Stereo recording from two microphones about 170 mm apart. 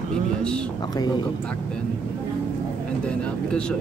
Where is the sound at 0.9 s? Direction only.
25° left (ahead or behind).